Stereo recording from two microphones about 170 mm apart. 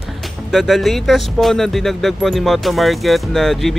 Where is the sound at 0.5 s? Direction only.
Centre (ahead or behind).